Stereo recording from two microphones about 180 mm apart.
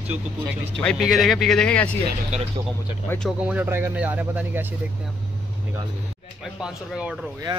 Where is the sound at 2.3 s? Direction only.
40° right (ahead or behind).